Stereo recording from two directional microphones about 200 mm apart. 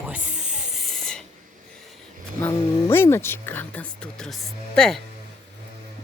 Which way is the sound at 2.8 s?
10° left (ahead or behind).